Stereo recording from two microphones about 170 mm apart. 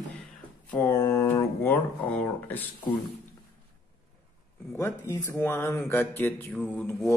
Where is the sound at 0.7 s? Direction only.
15° left (ahead or behind).